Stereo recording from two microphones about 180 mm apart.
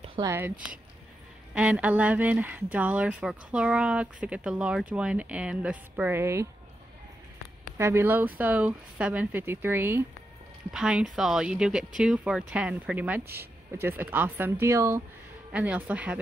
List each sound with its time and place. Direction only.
0.0 s a sound: 30° right (ahead or behind)
1.5 s speech: 5° right (ahead or behind)
7.7 s speech: 15° right (ahead or behind)